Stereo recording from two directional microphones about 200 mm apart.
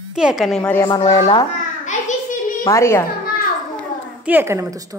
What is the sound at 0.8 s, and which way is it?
Speech, 20° left (ahead or behind).